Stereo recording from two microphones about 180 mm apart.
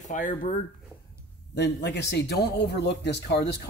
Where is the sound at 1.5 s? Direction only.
70° left (ahead or behind).